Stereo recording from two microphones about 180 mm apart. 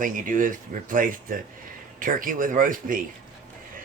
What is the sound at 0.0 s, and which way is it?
Speech, 50° right (ahead or behind).